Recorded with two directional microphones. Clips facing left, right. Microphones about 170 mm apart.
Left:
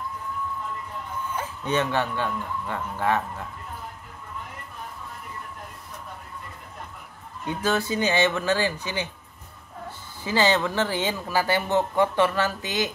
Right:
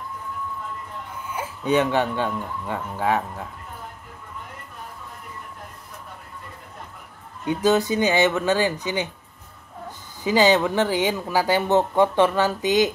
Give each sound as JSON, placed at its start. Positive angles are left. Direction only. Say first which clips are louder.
{"t": 1.3, "sound": "speech", "louder": "right 5 dB", "side_deg": -10}
{"t": 7.4, "sound": "speech", "louder": "right 6 dB", "side_deg": -15}